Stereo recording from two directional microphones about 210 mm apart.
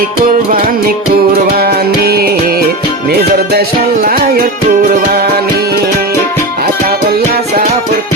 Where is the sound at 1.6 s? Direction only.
50° right (ahead or behind).